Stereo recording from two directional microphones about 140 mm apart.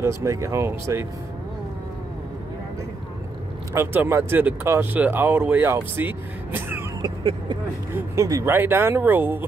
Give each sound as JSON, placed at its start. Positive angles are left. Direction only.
{"t": 0.0, "sound": "speech", "side_deg": -20}
{"t": 3.7, "sound": "speech", "side_deg": -15}
{"t": 7.0, "sound": "vehicle", "side_deg": -35}
{"t": 7.9, "sound": "speech", "side_deg": -20}